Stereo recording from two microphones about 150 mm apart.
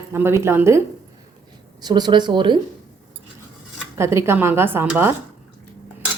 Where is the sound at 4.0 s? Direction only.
20° right (ahead or behind).